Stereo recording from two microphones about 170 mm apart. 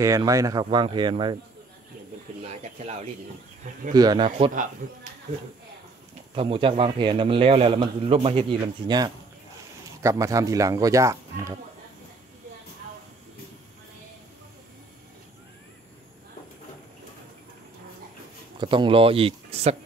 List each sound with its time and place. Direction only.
0.0 s speech: 20° right (ahead or behind)
3.9 s speech: 25° right (ahead or behind)
4.8 s speech: 50° right (ahead or behind)
6.3 s a man's voice: 30° right (ahead or behind)
18.6 s a man's voice: 30° right (ahead or behind)